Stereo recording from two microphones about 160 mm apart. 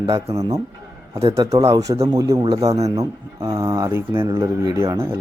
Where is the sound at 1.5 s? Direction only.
40° right (ahead or behind).